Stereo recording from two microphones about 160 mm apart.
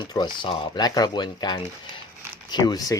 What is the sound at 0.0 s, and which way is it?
Speech, 30° left (ahead or behind).